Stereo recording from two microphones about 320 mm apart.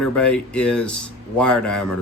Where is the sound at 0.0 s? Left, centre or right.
Centre.